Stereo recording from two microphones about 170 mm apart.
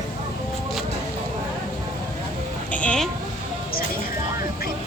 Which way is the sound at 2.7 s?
5° left (ahead or behind).